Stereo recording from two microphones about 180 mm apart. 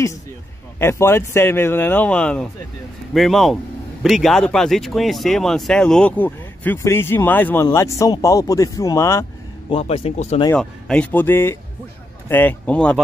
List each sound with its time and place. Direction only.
0.7 s speech: 15° left (ahead or behind)
9.7 s a man's voice: 35° left (ahead or behind)
10.5 s speech: 5° left (ahead or behind)